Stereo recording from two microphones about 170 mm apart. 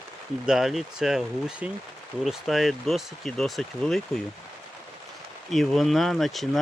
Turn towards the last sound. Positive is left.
turn(degrees=0)  # may be behind; listen again after turning